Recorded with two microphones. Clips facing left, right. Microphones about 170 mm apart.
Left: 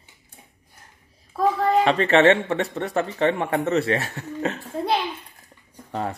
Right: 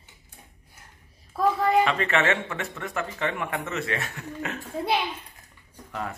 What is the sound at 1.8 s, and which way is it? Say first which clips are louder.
Speech: left 6 dB; 35° left (ahead or behind).